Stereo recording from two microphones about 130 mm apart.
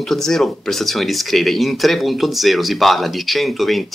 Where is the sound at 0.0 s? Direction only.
Centre (ahead or behind).